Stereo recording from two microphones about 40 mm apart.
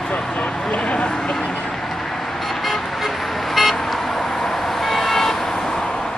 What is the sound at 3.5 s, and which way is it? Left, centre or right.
Vehicle, centre.